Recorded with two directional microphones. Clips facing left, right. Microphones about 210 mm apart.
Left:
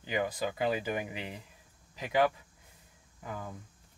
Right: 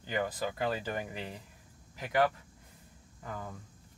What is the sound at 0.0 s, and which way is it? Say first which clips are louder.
Speech: left 1 dB; 10° left (ahead or behind).